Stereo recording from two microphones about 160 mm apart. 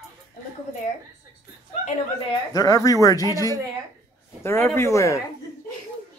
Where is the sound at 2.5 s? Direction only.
20° left (ahead or behind).